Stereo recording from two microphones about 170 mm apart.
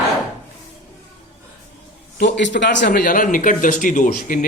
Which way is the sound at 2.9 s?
55° left (ahead or behind).